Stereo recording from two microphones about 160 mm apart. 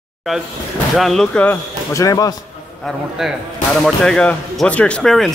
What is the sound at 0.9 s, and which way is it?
Speech, centre (ahead or behind).